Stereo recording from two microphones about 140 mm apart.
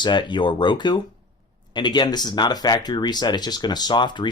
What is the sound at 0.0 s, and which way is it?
Speech, 35° left (ahead or behind).